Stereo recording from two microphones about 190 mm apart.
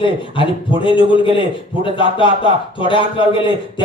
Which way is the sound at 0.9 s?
25° left (ahead or behind).